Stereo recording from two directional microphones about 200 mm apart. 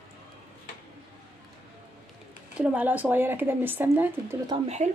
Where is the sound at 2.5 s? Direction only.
5° right (ahead or behind).